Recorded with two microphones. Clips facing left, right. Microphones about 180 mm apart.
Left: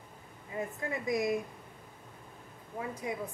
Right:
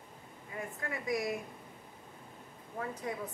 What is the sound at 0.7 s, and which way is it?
Speech, 25° left (ahead or behind).